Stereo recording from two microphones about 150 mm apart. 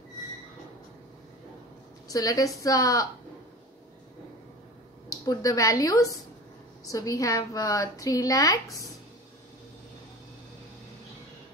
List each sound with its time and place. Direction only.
2.0 s a woman's voice: 25° left (ahead or behind)
5.2 s a woman's voice: 25° left (ahead or behind)